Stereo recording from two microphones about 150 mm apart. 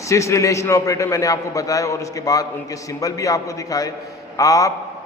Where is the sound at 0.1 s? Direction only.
20° left (ahead or behind).